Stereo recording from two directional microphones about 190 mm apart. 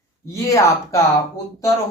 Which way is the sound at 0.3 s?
15° left (ahead or behind).